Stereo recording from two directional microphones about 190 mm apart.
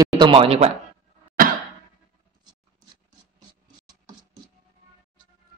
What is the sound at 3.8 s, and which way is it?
Scratch, 20° right (ahead or behind).